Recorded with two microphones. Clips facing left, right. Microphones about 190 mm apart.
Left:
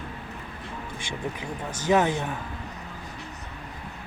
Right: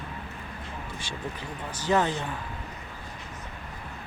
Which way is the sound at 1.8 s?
15° left (ahead or behind).